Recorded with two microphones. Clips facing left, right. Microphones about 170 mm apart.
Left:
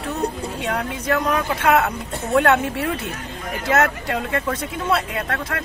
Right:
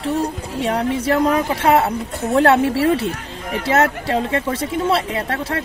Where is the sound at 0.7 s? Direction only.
30° right (ahead or behind).